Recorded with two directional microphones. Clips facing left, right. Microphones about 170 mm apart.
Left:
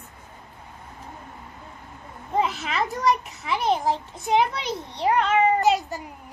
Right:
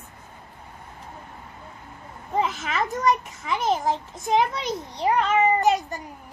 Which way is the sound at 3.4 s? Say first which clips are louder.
Left 1 dB; centre (ahead or behind).